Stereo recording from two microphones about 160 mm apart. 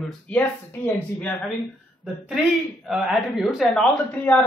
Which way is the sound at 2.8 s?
Centre (ahead or behind).